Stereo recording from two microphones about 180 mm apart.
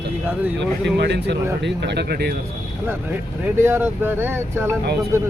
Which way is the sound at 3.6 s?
10° right (ahead or behind).